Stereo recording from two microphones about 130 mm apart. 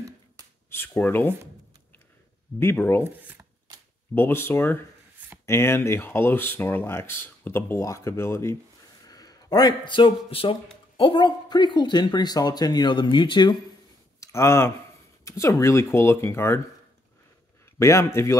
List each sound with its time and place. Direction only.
0.7 s speech: 15° left (ahead or behind)
2.6 s speech: 20° left (ahead or behind)
3.0 s a sound: 20° right (ahead or behind)
4.1 s speech: 15° left (ahead or behind); by 13.6 s 35° left (ahead or behind)
14.2 s speech: 20° left (ahead or behind)
17.7 s speech: 25° left (ahead or behind)